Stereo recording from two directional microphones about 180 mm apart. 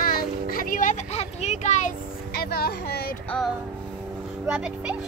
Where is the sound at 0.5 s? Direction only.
45° left (ahead or behind).